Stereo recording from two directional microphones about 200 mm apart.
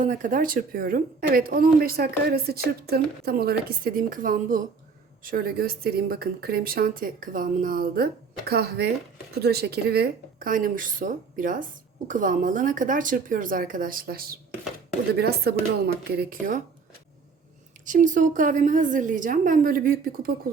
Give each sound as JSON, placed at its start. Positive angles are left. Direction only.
{"t": 0.0, "sound": "a woman's voice", "side_deg": -40}
{"t": 17.8, "sound": "a woman's voice", "side_deg": -40}